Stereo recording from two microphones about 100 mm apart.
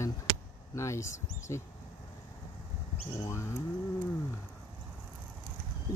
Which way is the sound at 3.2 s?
25° left (ahead or behind).